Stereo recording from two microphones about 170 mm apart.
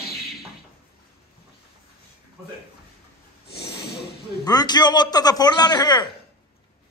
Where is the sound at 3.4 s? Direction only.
70° left (ahead or behind).